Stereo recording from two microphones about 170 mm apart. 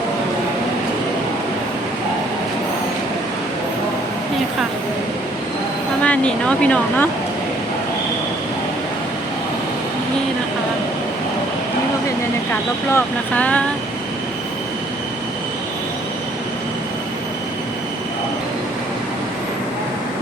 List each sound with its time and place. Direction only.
6.0 s speech: 5° left (ahead or behind)
12.9 s speech: 10° left (ahead or behind)